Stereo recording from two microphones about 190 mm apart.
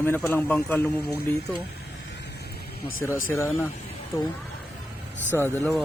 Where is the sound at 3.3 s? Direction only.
15° left (ahead or behind).